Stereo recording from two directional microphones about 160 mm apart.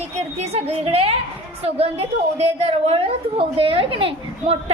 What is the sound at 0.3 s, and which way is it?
A woman's voice, 40° right (ahead or behind).